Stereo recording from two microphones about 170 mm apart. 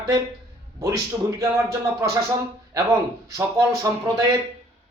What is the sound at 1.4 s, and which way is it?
Speech, 20° right (ahead or behind).